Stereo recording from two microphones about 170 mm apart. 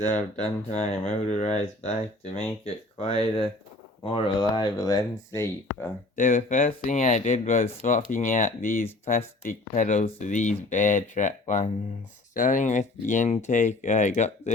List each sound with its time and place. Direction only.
0.0 s speech: 45° left (ahead or behind); by 5.9 s 15° left (ahead or behind)
6.1 s speech: 55° left (ahead or behind)